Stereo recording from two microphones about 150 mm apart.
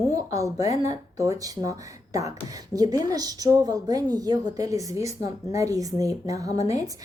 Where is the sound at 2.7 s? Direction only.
25° right (ahead or behind).